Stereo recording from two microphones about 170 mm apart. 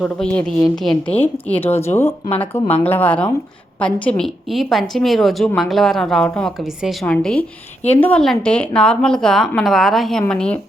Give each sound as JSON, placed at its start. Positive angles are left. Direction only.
{"t": 0.0, "sound": "a woman's voice", "side_deg": 5}
{"t": 1.0, "sound": "speech", "side_deg": 35}
{"t": 1.5, "sound": "a woman's voice", "side_deg": 10}
{"t": 2.5, "sound": "speech", "side_deg": 35}
{"t": 2.8, "sound": "a woman's voice", "side_deg": 10}